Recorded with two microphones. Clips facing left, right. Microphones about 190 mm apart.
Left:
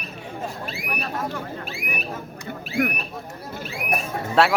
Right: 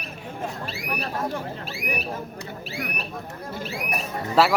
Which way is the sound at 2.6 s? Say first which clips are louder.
Left 10 dB; 50° left (ahead or behind).